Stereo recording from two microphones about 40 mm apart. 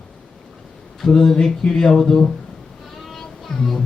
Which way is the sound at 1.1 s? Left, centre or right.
Left.